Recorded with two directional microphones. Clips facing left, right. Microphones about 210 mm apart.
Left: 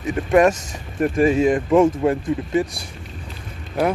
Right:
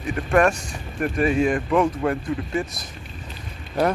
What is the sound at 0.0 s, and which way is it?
Speech, 20° left (ahead or behind).